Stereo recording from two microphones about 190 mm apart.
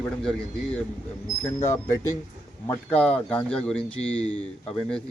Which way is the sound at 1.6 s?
15° left (ahead or behind).